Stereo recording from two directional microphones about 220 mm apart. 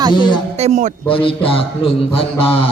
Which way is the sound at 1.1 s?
25° left (ahead or behind).